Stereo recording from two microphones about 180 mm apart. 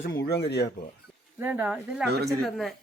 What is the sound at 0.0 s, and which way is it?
Speech, 70° left (ahead or behind).